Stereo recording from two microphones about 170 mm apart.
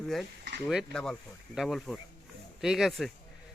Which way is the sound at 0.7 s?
Centre (ahead or behind).